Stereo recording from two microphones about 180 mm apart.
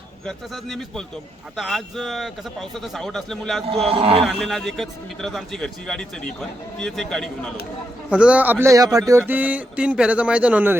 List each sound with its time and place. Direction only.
0.3 s a man's voice: centre (ahead or behind)
3.8 s a man's voice: 35° right (ahead or behind)
4.3 s a man's voice: centre (ahead or behind)